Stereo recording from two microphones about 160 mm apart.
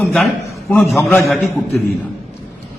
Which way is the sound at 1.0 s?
15° left (ahead or behind).